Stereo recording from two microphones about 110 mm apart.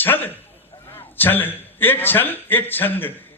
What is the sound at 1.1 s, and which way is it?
A man's voice, 20° left (ahead or behind).